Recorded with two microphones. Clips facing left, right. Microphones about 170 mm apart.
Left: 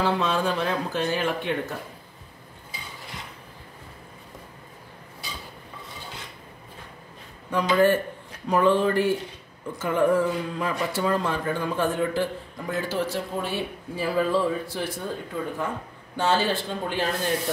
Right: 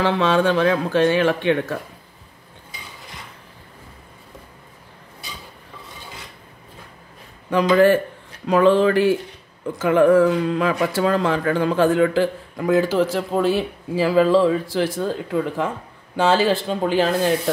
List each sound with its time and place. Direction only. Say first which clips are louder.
0.0 s speech: right 6 dB; 90° right
7.5 s speech: right 6 dB; 90° right